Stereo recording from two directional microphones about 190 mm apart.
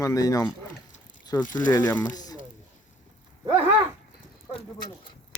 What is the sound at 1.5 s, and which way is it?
Speech, 20° left (ahead or behind).